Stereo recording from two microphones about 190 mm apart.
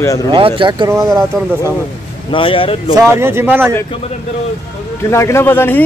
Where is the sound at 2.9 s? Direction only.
15° right (ahead or behind).